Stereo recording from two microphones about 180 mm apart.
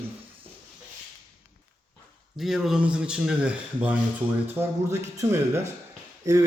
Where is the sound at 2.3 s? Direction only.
Centre (ahead or behind).